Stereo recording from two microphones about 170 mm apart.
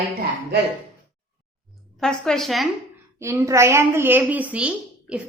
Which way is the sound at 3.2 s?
15° right (ahead or behind).